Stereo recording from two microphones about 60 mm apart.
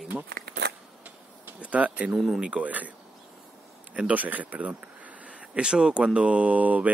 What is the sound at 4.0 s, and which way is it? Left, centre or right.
Speech, right.